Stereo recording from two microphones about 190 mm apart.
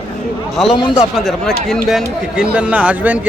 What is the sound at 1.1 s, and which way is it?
Speech, centre (ahead or behind).